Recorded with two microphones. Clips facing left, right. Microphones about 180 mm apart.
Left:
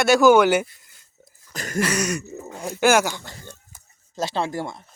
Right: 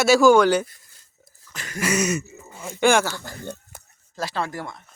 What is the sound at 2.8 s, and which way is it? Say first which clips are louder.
Speech: left 1 dB; 5° left (ahead or behind).